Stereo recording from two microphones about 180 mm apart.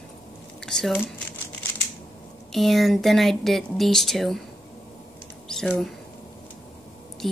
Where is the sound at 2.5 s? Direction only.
Centre (ahead or behind).